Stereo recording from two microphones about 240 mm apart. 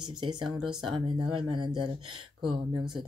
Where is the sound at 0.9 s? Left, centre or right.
Centre.